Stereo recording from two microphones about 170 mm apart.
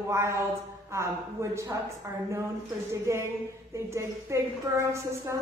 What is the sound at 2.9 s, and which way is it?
A woman's voice, 15° right (ahead or behind).